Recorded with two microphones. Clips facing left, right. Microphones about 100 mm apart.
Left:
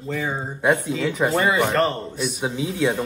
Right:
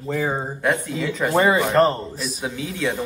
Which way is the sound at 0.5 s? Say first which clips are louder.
Left 7 dB; 20° left (ahead or behind).